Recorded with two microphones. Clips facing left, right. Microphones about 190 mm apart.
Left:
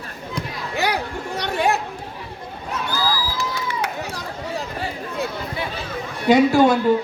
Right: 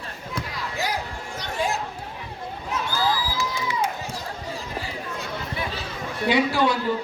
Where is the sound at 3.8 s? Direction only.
70° left (ahead or behind).